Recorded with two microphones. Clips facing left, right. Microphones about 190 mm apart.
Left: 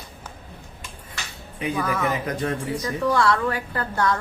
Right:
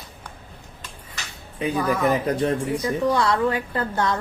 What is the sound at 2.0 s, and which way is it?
Speech, 35° right (ahead or behind).